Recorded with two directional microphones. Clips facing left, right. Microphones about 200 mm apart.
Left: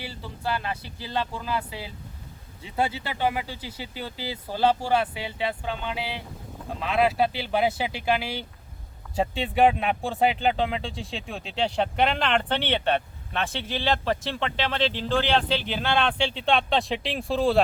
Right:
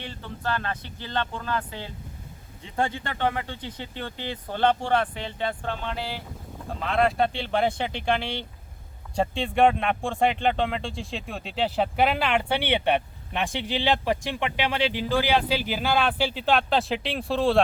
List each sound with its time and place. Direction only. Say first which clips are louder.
0.0 s speech: even; 5° left (ahead or behind)